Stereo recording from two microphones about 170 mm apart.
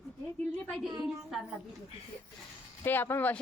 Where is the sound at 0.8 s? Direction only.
25° right (ahead or behind).